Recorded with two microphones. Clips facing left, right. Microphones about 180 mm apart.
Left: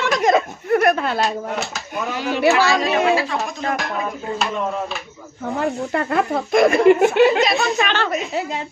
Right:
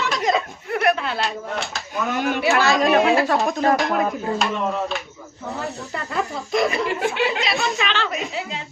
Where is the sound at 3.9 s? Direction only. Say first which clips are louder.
Right 4 dB; 55° right (ahead or behind).